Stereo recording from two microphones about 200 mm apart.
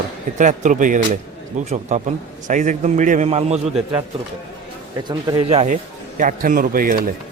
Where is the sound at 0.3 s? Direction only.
40° right (ahead or behind).